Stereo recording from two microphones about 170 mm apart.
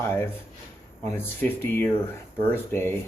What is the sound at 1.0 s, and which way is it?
Speech, 15° left (ahead or behind).